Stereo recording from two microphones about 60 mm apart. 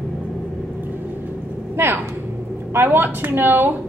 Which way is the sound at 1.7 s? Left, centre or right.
Right.